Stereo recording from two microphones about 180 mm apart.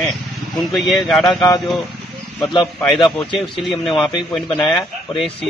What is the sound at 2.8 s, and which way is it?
A man's voice, centre (ahead or behind).